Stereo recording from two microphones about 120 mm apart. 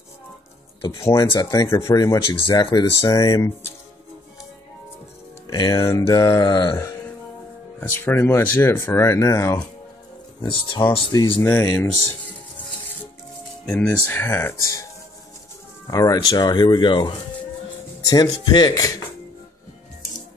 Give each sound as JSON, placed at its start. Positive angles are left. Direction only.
{"t": 1.4, "sound": "speech", "side_deg": 30}
{"t": 5.5, "sound": "speech", "side_deg": 30}
{"t": 5.9, "sound": "speech", "side_deg": 20}
{"t": 6.1, "sound": "speech", "side_deg": 30}
{"t": 7.8, "sound": "speech", "side_deg": 20}
{"t": 10.4, "sound": "speech", "side_deg": 45}
{"t": 11.3, "sound": "speech", "side_deg": 15}
{"t": 11.6, "sound": "speech", "side_deg": 25}
{"t": 13.7, "sound": "speech", "side_deg": 10}
{"t": 15.9, "sound": "speech", "side_deg": 30}
{"t": 18.0, "sound": "speech", "side_deg": 30}